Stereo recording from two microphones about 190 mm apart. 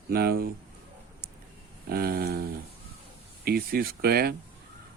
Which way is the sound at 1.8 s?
55° right (ahead or behind).